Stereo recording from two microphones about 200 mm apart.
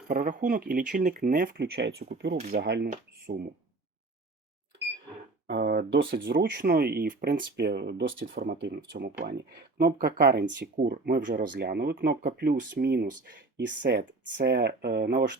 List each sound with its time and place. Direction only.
0.1 s speech: 45° right (ahead or behind)
5.5 s speech: 50° right (ahead or behind)
10.8 s speech: 45° right (ahead or behind)